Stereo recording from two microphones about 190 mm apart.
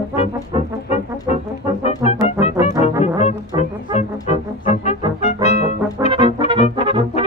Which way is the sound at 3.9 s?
35° left (ahead or behind).